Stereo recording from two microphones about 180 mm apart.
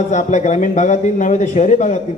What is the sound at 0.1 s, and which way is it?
A man's voice, 40° left (ahead or behind).